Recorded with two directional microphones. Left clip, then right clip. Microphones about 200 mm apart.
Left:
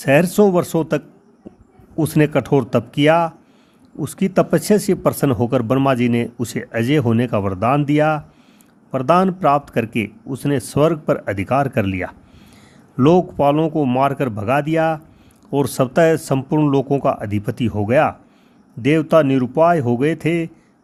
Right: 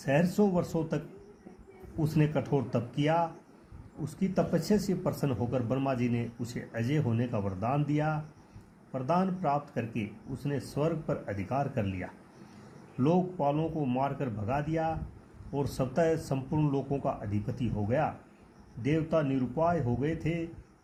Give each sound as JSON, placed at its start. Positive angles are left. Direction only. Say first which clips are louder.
{"t": 0.0, "sound": "speech", "louder": "left 14 dB", "side_deg": 50}